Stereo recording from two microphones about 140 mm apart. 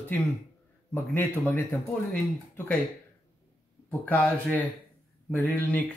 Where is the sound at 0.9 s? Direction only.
15° left (ahead or behind).